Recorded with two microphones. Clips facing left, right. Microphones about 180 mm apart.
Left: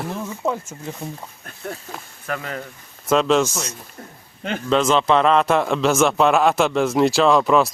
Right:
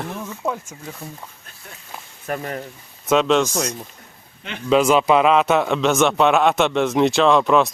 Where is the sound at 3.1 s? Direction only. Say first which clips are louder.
Even; centre (ahead or behind).